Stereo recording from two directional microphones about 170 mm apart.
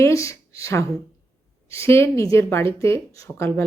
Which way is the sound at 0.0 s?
20° left (ahead or behind).